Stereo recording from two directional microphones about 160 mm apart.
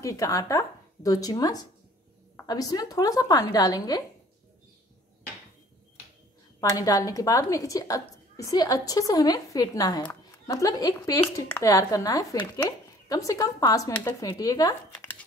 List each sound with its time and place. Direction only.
0.0 s a woman's voice: 20° left (ahead or behind)
6.6 s a woman's voice: 20° left (ahead or behind)
15.0 s dog: 10° left (ahead or behind)